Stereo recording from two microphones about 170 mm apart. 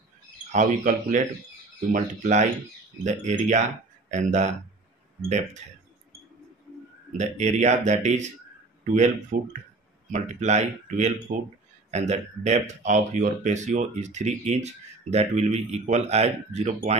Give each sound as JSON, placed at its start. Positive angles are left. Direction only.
{"t": 0.5, "sound": "speech", "side_deg": -45}
{"t": 7.2, "sound": "speech", "side_deg": -45}